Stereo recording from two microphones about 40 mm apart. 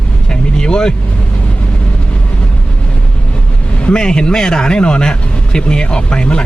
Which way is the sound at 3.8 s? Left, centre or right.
Left.